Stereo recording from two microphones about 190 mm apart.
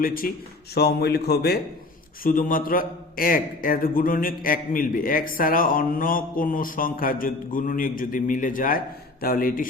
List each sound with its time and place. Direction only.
0.0 s a man's voice: 50° left (ahead or behind)
2.2 s a man's voice: 45° left (ahead or behind)